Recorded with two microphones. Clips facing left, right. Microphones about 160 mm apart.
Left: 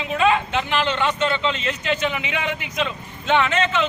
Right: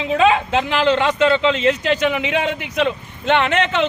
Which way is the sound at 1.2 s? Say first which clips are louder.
Right 7 dB; 90° right.